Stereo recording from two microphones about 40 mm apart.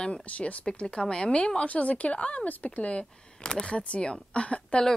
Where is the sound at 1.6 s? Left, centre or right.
Left.